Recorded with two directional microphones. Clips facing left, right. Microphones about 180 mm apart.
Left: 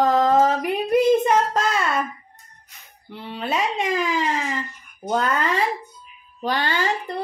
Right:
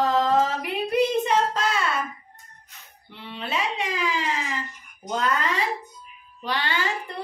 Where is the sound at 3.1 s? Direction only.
40° left (ahead or behind).